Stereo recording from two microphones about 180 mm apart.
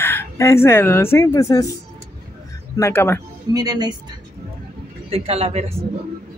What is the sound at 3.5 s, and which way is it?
Speech, 20° right (ahead or behind).